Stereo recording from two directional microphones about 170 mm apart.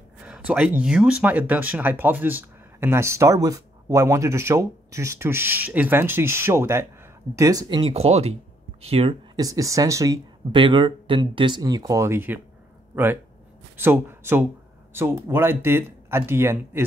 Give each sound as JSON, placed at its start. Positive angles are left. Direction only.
{"t": 0.2, "sound": "speech", "side_deg": -5}
{"t": 7.8, "sound": "speech", "side_deg": -40}